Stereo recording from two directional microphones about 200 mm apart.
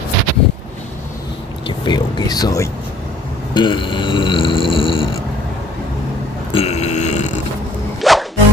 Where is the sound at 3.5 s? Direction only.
25° left (ahead or behind).